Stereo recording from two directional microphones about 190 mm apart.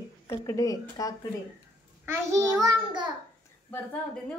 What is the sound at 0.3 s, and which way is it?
Speech, 15° left (ahead or behind).